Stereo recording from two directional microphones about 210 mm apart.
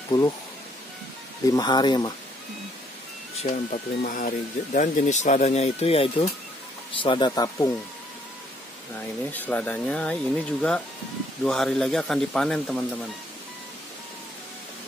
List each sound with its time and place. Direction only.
0.1 s speech: 20° left (ahead or behind)
1.5 s speech: 20° left (ahead or behind)
3.4 s speech: 35° left (ahead or behind); by 7.7 s 15° left (ahead or behind)
9.3 s speech: 5° left (ahead or behind)